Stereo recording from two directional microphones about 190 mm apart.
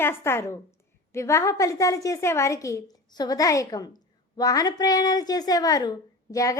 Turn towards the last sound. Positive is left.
turn(degrees=15)  # may be behind; listen again after turning